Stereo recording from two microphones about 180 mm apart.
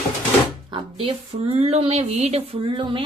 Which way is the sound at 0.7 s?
30° right (ahead or behind).